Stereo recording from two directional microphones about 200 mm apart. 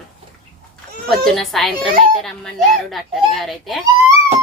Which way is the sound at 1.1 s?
Centre (ahead or behind).